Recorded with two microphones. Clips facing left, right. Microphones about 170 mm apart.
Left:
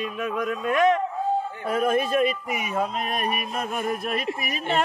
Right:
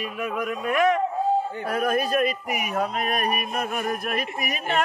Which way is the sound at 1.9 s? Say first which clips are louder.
Even; centre (ahead or behind).